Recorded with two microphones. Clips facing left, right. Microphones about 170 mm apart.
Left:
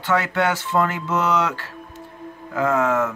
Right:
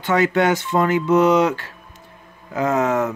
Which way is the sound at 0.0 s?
20° right (ahead or behind).